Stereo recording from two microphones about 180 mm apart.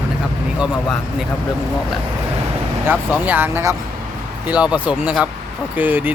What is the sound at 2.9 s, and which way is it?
Speech, 10° right (ahead or behind).